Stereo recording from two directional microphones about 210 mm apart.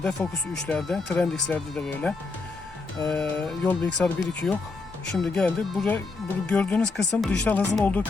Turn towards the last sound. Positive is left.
turn(degrees=10)  # may be behind; listen again after turning